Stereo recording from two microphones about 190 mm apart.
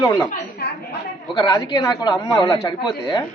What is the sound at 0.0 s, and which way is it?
Speech, 15° left (ahead or behind).